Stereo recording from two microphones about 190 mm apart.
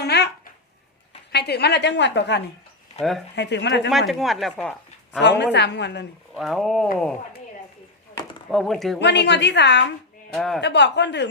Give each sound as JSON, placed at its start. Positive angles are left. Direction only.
{"t": 0.0, "sound": "a sound", "side_deg": 60}
{"t": 1.3, "sound": "a woman's voice", "side_deg": 60}
{"t": 3.0, "sound": "speech", "side_deg": 0}
{"t": 3.3, "sound": "a woman's voice", "side_deg": 65}
{"t": 4.1, "sound": "speech", "side_deg": 0}
{"t": 5.2, "sound": "a woman's voice", "side_deg": 65}
{"t": 6.3, "sound": "speech", "side_deg": 0}
{"t": 8.4, "sound": "speech", "side_deg": 0}
{"t": 9.0, "sound": "a woman's voice", "side_deg": 65}
{"t": 10.3, "sound": "speech", "side_deg": 0}
{"t": 10.6, "sound": "a woman's voice", "side_deg": 65}